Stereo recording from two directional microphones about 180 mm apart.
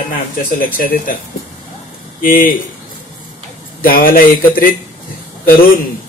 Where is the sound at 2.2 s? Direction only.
50° left (ahead or behind).